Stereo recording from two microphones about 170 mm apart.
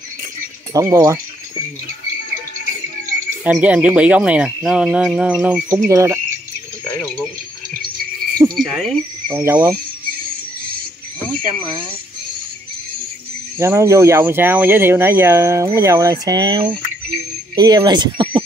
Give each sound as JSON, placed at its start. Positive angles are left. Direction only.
{"t": 0.7, "sound": "speech", "side_deg": -20}
{"t": 3.4, "sound": "speech", "side_deg": -5}
{"t": 5.9, "sound": "speech", "side_deg": -15}
{"t": 8.5, "sound": "speech", "side_deg": 0}
{"t": 9.4, "sound": "speech", "side_deg": -15}
{"t": 11.6, "sound": "speech", "side_deg": -30}
{"t": 13.6, "sound": "speech", "side_deg": -15}